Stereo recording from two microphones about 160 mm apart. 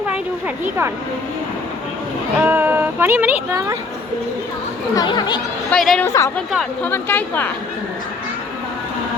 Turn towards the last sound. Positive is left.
turn(degrees=10)  # may be behind; listen again after turning